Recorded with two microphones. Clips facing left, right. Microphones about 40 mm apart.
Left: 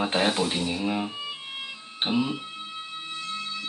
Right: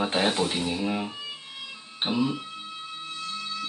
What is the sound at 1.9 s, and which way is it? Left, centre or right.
Speech, left.